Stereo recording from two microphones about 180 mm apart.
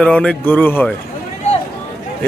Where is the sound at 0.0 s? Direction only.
5° left (ahead or behind).